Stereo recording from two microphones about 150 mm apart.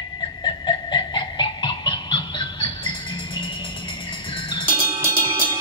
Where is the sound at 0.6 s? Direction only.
30° left (ahead or behind).